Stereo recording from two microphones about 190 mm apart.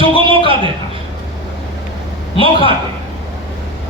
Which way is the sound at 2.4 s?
30° left (ahead or behind).